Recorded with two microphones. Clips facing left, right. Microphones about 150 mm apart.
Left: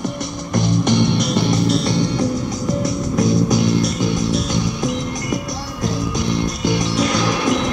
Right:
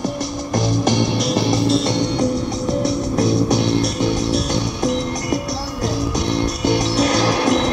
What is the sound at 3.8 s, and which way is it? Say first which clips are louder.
Music: even; 70° right (ahead or behind).